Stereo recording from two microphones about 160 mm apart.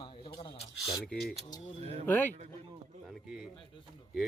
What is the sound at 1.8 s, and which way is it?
Speech, 40° right (ahead or behind).